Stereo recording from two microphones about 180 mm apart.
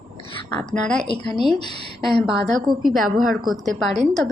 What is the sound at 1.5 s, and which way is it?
Speech, 25° left (ahead or behind).